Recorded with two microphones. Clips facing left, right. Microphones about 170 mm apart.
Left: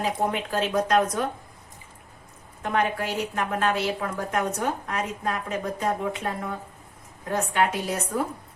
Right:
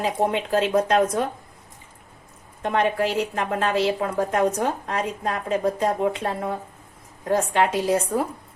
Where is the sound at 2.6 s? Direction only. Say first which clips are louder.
Right 4 dB; 30° right (ahead or behind).